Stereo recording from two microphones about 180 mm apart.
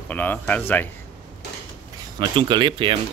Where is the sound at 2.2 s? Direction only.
25° right (ahead or behind).